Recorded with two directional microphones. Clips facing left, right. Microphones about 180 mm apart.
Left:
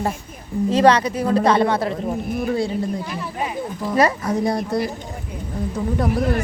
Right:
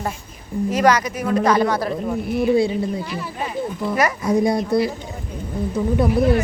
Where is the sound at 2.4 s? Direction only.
10° right (ahead or behind).